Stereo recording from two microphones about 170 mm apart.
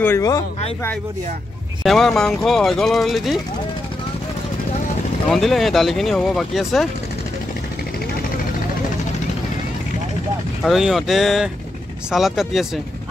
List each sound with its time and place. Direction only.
0.0 s speech: 15° left (ahead or behind)
1.8 s speech: centre (ahead or behind)
5.3 s speech: centre (ahead or behind)
10.6 s speech: centre (ahead or behind)